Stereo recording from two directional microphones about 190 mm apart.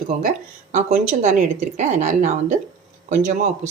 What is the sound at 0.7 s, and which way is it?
Speech, 40° right (ahead or behind).